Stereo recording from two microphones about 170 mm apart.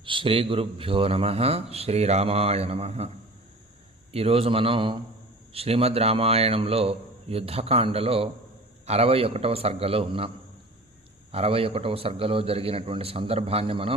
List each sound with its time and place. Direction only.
0.0 s speech: 30° right (ahead or behind)
4.1 s speech: 35° right (ahead or behind)